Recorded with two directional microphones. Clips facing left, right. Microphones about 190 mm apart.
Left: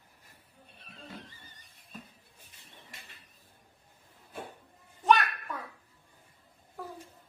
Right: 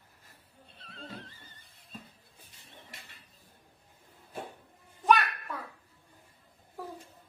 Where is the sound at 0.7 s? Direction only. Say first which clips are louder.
Right 2 dB; 15° left (ahead or behind).